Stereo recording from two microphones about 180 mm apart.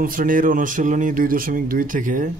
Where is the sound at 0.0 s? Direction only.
50° right (ahead or behind).